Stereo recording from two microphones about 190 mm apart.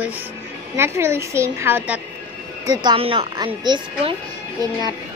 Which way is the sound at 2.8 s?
30° right (ahead or behind).